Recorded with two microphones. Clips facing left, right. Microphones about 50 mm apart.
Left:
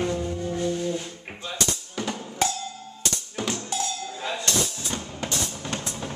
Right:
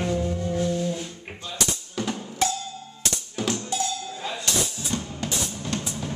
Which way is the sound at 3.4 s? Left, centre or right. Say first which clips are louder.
Right 2 dB; centre.